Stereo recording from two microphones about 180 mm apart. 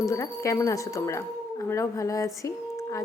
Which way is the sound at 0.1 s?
15° left (ahead or behind).